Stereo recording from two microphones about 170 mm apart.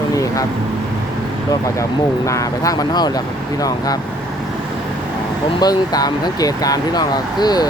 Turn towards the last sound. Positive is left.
turn(degrees=25)  # may be behind; listen again after turning